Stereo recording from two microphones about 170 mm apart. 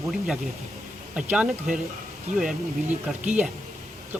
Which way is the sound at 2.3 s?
45° right (ahead or behind).